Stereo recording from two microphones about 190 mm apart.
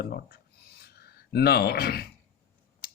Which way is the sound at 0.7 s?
55° left (ahead or behind).